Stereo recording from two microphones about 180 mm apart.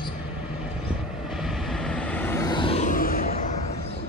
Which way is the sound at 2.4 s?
25° left (ahead or behind).